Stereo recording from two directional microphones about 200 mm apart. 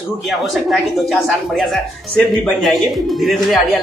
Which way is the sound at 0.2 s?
Centre (ahead or behind).